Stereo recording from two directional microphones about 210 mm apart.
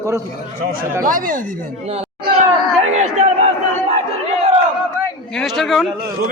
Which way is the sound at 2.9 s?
30° right (ahead or behind).